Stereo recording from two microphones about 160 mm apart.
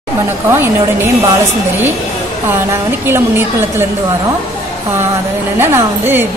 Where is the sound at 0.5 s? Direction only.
15° right (ahead or behind).